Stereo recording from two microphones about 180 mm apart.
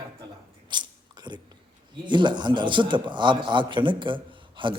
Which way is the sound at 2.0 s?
25° right (ahead or behind).